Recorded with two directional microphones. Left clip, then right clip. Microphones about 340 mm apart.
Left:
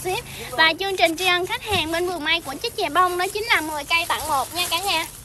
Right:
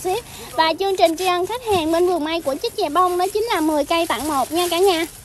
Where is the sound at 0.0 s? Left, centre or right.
Centre.